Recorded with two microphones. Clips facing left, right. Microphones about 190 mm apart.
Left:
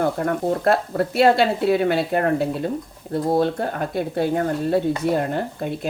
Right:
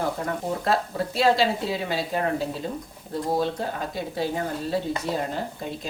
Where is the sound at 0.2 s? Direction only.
60° left (ahead or behind).